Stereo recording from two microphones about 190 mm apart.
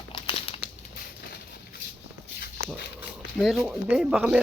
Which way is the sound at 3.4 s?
Centre (ahead or behind).